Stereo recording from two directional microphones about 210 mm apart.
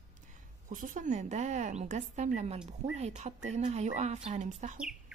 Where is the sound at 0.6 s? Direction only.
40° right (ahead or behind).